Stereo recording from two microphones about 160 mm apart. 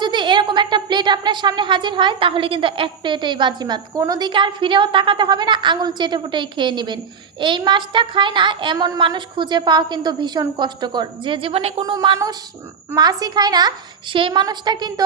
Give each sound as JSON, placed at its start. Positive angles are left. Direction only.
{"t": 0.0, "sound": "speech", "side_deg": -30}